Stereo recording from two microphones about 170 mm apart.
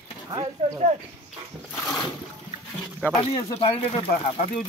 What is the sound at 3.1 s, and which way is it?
Speech, 35° left (ahead or behind).